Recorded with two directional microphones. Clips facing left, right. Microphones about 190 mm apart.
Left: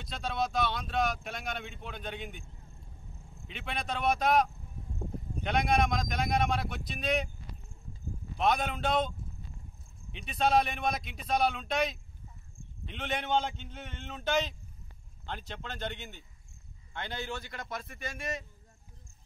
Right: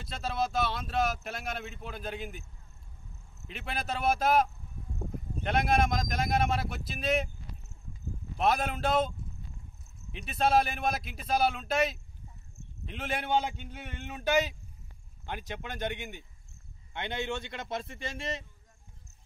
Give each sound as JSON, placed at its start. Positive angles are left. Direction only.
{"t": 0.0, "sound": "speech", "side_deg": 0}
{"t": 3.4, "sound": "speech", "side_deg": 0}
{"t": 8.4, "sound": "speech", "side_deg": 0}
{"t": 10.1, "sound": "a man's voice", "side_deg": 0}